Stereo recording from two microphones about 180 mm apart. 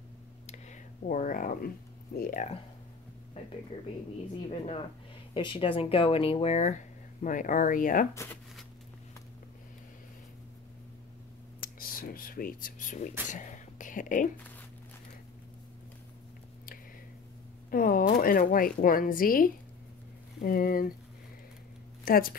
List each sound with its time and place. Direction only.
0.5 s a sound: 40° left (ahead or behind)
2.1 s speech: 55° left (ahead or behind)
4.5 s speech: 35° left (ahead or behind)
8.1 s speech: 15° left (ahead or behind)
11.6 s speech: 55° left (ahead or behind)
17.6 s speech: 50° left (ahead or behind)
22.0 s speech: 55° left (ahead or behind)